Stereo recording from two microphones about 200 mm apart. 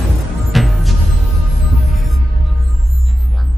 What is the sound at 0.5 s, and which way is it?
Music, centre (ahead or behind).